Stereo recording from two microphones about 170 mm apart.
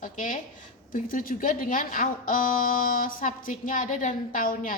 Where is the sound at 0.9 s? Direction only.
55° left (ahead or behind).